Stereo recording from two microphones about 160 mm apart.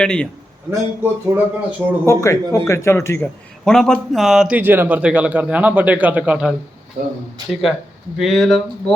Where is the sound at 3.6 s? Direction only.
5° left (ahead or behind).